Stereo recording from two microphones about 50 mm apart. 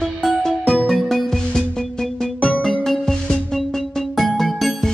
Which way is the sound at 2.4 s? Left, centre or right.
Left.